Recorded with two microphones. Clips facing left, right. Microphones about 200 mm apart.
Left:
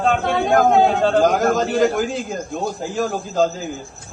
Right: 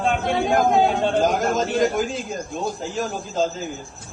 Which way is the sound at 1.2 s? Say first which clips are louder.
Left 4 dB; 55° left (ahead or behind).